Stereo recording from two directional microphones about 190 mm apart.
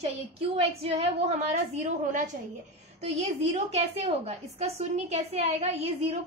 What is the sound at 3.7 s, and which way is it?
A woman's voice, 35° right (ahead or behind).